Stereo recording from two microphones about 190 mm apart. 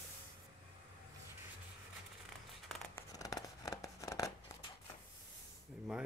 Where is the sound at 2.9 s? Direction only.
20° left (ahead or behind).